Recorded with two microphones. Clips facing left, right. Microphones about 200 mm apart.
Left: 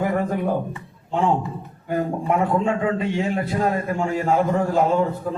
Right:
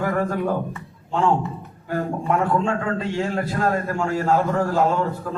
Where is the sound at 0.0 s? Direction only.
20° left (ahead or behind).